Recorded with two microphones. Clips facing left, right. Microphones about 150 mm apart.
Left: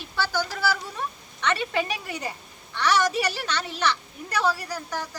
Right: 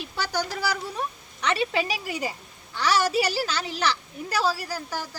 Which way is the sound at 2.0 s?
10° right (ahead or behind).